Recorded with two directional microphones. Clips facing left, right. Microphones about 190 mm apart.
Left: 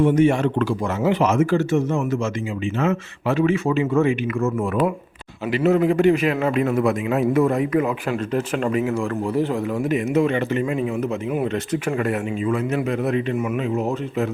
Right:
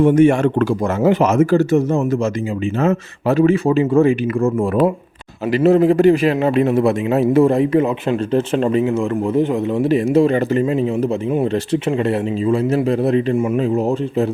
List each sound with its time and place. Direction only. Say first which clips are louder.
0.0 s a man's voice: right 5 dB; 50° right (ahead or behind); by 9.8 s 20° right (ahead or behind)
9.8 s a man's voice: right 6 dB; 30° right (ahead or behind)